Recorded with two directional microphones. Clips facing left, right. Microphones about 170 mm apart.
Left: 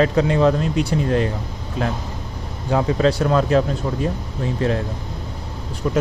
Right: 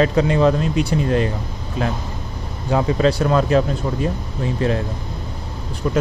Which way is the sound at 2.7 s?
5° right (ahead or behind).